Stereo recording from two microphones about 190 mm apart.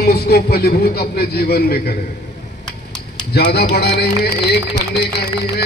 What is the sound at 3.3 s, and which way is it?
A man's voice, 60° left (ahead or behind).